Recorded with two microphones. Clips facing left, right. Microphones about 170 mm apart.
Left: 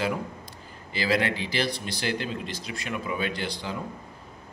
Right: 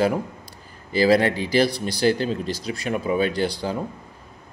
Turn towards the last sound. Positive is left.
turn(degrees=-35)  # may be behind; listen again after turning